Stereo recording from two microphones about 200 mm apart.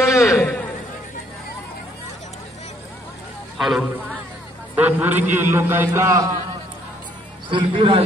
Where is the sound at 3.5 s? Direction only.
Centre (ahead or behind).